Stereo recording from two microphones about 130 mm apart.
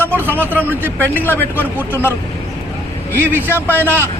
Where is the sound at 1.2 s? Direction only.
15° left (ahead or behind).